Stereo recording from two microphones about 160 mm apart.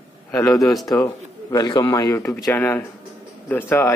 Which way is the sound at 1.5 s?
25° left (ahead or behind).